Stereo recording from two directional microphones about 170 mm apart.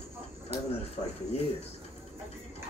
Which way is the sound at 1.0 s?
35° left (ahead or behind).